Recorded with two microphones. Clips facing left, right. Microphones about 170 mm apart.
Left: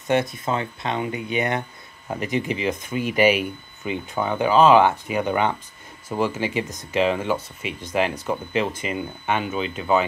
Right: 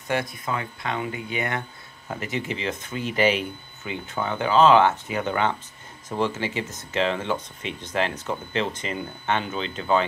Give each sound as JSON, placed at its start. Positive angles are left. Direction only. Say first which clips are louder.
{"t": 0.1, "sound": "speech", "louder": "left 5 dB", "side_deg": 25}